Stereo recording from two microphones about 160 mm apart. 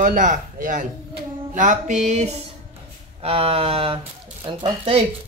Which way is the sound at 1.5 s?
50° right (ahead or behind).